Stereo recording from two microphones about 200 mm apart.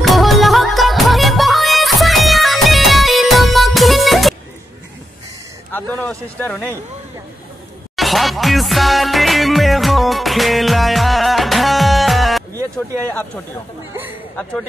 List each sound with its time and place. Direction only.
0.0 s music: centre (ahead or behind)
5.7 s a sound: 10° left (ahead or behind)
7.9 s music: centre (ahead or behind)
12.7 s speech: 10° left (ahead or behind)